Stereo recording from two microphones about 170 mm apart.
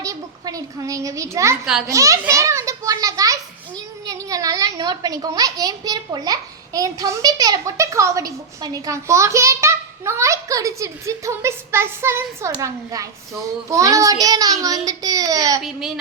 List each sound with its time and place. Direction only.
0.0 s a child's voice: 20° right (ahead or behind)
15.6 s speech: centre (ahead or behind)